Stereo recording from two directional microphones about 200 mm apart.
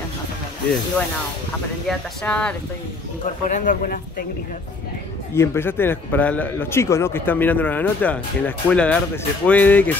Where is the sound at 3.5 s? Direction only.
40° left (ahead or behind).